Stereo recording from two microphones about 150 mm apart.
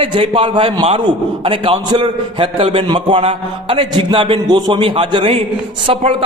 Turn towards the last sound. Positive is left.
turn(degrees=-35)  # may be behind; listen again after turning